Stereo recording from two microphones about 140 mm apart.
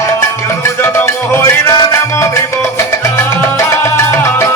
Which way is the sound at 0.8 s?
20° left (ahead or behind).